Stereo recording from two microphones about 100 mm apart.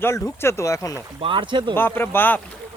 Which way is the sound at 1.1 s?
60° right (ahead or behind).